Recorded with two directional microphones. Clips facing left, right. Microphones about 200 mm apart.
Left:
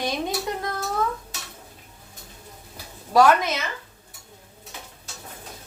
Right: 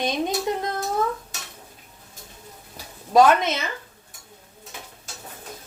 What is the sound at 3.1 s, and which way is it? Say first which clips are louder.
Speech: right 1 dB; 20° right (ahead or behind).